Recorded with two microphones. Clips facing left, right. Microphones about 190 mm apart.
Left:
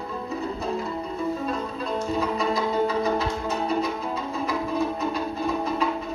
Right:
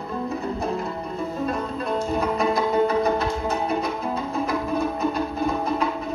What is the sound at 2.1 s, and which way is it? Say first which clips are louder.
Music: right 3 dB; 55° right (ahead or behind).